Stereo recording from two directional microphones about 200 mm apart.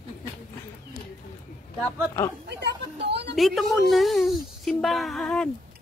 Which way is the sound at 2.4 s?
55° right (ahead or behind).